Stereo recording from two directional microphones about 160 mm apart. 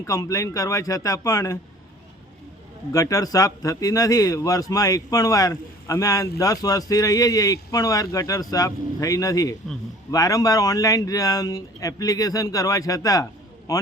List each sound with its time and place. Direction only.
0.0 s speech: 20° left (ahead or behind)
2.9 s a man's voice: 20° left (ahead or behind)